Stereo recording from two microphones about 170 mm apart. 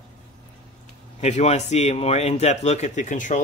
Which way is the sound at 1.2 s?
40° left (ahead or behind).